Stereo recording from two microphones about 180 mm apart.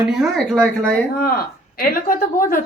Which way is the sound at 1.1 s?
60° left (ahead or behind).